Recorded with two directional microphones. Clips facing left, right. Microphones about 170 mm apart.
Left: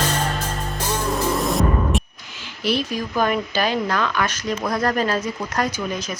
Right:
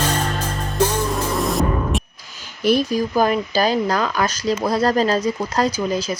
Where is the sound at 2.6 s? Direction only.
45° right (ahead or behind).